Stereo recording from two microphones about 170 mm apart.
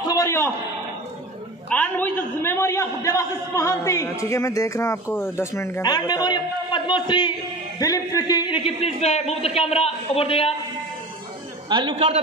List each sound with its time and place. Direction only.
0.0 s a sound: 20° left (ahead or behind)
1.7 s a man's voice: 10° left (ahead or behind); by 10.5 s 35° left (ahead or behind)
11.7 s a man's voice: 25° right (ahead or behind)